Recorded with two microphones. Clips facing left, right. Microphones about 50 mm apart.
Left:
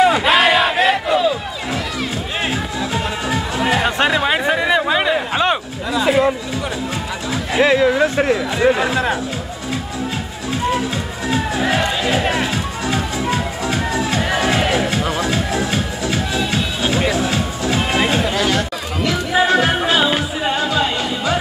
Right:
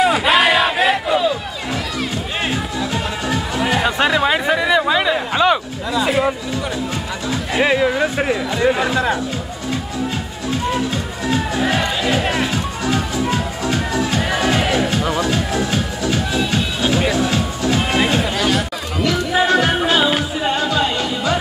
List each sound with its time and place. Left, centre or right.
0.0 s crowd: centre
2.5 s music: centre
5.3 s a sound: centre
6.0 s a sound: centre
7.6 s speech: centre
11.2 s music: centre
12.5 s music: centre
15.7 s music: centre
17.9 s chatter: centre
19.4 s music: centre
20.0 s music: centre